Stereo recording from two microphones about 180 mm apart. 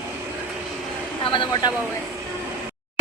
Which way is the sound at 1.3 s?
30° left (ahead or behind).